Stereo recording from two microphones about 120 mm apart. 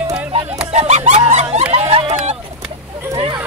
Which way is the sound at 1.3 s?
70° right (ahead or behind).